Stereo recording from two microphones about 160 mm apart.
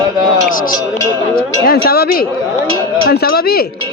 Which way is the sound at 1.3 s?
70° left (ahead or behind).